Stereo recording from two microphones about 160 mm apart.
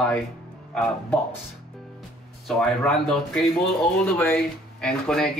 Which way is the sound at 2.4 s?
5° left (ahead or behind).